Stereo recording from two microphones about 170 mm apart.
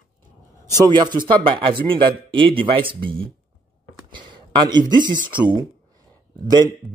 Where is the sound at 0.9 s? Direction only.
25° right (ahead or behind).